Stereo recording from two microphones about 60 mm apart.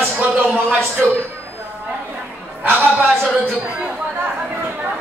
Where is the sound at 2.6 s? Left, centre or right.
Right.